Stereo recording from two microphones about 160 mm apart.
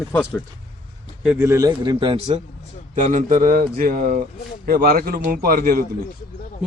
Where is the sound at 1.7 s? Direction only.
30° right (ahead or behind).